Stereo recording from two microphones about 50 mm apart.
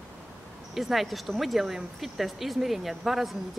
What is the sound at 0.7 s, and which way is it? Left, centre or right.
Speech, centre.